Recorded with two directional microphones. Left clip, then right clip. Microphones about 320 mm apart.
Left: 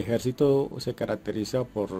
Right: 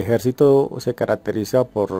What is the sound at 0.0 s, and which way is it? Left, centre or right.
Speech, centre.